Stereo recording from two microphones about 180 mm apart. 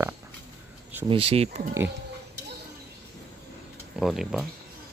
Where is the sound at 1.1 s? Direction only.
35° right (ahead or behind).